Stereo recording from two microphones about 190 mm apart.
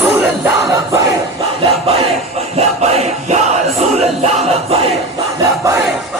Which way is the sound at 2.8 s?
35° right (ahead or behind).